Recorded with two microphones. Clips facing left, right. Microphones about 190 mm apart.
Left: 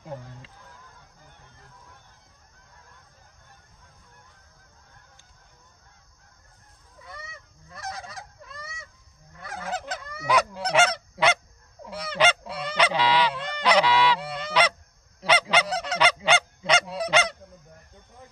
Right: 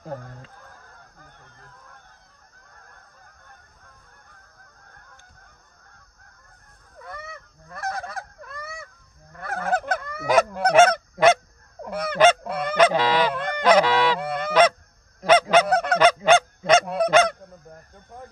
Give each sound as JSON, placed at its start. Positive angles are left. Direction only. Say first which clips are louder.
{"t": 0.0, "sound": "goose", "louder": "right 3 dB", "side_deg": -45}
{"t": 7.0, "sound": "goose", "louder": "right 6 dB", "side_deg": -55}